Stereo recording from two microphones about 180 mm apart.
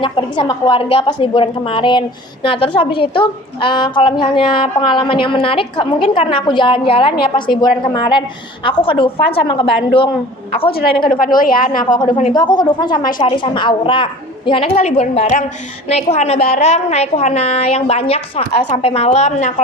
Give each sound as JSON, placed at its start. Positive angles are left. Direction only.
{"t": 0.0, "sound": "a woman's voice", "side_deg": 25}
{"t": 10.7, "sound": "a woman's voice", "side_deg": 60}
{"t": 12.3, "sound": "a woman's voice", "side_deg": 25}